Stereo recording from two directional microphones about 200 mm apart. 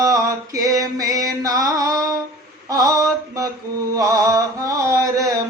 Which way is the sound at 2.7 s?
20° right (ahead or behind).